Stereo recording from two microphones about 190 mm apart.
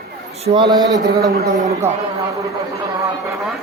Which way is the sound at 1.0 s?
60° right (ahead or behind).